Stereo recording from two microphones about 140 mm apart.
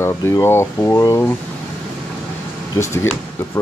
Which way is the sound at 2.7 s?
20° left (ahead or behind).